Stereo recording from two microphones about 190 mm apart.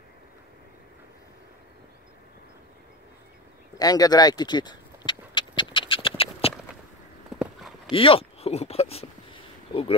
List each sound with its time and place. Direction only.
3.7 s speech: 20° left (ahead or behind)
5.6 s horse: 25° left (ahead or behind)
7.3 s clip-clop: 5° right (ahead or behind)
7.9 s a sound: 30° left (ahead or behind)